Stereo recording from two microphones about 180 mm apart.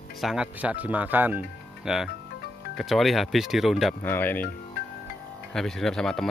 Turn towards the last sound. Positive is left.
turn(degrees=5)  # may be behind; listen again after turning